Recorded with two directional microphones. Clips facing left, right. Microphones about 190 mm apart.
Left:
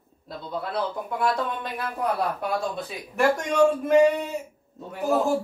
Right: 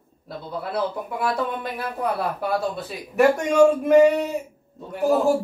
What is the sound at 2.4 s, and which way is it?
A man's voice, 5° right (ahead or behind).